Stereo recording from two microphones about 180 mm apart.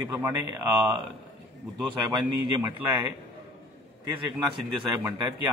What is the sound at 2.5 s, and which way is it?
Speech, 15° right (ahead or behind).